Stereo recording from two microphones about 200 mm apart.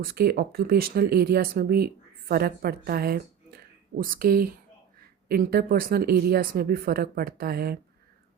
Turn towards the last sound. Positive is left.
turn(degrees=-50)  # may be behind; listen again after turning